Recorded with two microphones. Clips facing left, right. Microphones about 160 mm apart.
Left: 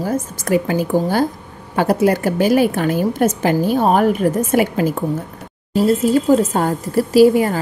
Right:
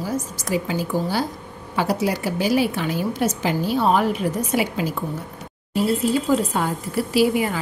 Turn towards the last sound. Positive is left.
turn(degrees=40)  # may be behind; listen again after turning